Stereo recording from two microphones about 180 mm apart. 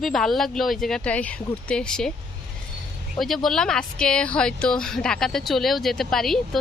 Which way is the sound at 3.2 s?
Centre (ahead or behind).